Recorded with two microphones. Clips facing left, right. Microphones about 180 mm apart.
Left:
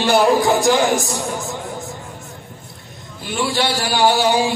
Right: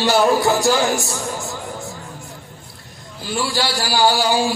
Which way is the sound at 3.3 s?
20° left (ahead or behind).